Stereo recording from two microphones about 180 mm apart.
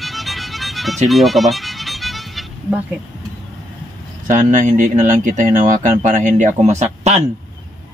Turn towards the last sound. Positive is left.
turn(degrees=-35)  # may be behind; listen again after turning